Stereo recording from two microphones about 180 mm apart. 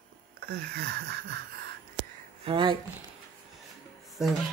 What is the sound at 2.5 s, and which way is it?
Speech, 30° right (ahead or behind).